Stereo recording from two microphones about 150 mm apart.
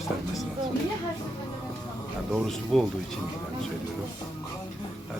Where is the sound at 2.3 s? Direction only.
Centre (ahead or behind).